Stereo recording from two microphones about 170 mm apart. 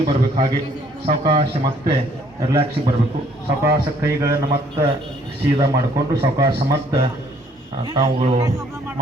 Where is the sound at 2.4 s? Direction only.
35° right (ahead or behind).